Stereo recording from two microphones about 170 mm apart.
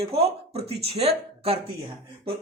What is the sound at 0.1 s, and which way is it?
Speech, 35° right (ahead or behind).